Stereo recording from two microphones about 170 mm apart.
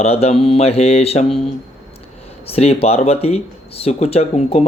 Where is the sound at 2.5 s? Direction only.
35° left (ahead or behind).